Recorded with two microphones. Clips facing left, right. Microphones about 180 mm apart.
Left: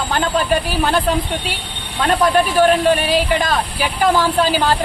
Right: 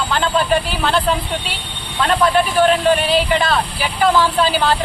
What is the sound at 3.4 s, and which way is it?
Speech, 40° left (ahead or behind).